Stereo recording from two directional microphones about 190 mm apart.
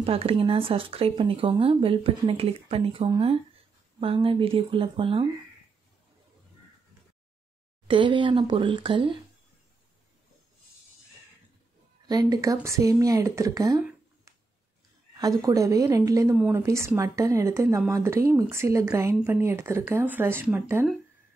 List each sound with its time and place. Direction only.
0.0 s speech: 30° right (ahead or behind)
7.9 s speech: 25° right (ahead or behind)
12.1 s a woman's voice: 20° right (ahead or behind)
15.1 s a woman's voice: 20° right (ahead or behind)